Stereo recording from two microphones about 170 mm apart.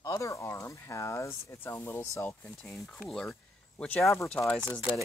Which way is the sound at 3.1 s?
5° left (ahead or behind).